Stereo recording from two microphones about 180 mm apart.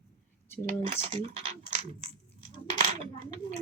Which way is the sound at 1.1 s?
30° right (ahead or behind).